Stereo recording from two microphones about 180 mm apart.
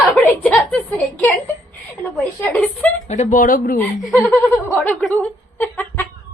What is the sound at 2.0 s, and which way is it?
Speech, 10° left (ahead or behind).